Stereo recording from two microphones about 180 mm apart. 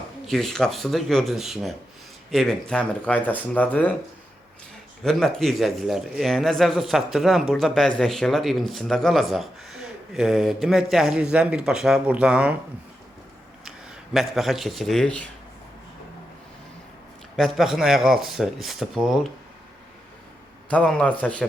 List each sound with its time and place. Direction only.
0.3 s speech: centre (ahead or behind)
5.0 s speech: centre (ahead or behind)
13.7 s speech: centre (ahead or behind)
17.3 s speech: centre (ahead or behind)
20.7 s speech: 5° left (ahead or behind)